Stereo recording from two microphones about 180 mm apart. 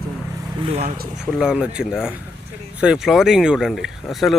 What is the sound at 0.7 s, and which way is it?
Speech, 35° right (ahead or behind).